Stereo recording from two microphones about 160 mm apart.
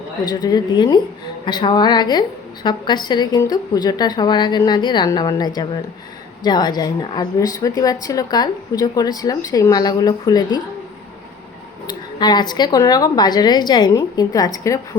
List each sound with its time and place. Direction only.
0.3 s a woman's voice: 25° left (ahead or behind)
11.9 s a woman's voice: 25° left (ahead or behind)